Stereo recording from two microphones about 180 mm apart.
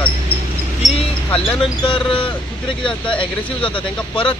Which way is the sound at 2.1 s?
30° left (ahead or behind).